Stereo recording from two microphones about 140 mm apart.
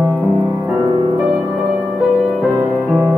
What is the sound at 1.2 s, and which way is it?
Music, 5° right (ahead or behind).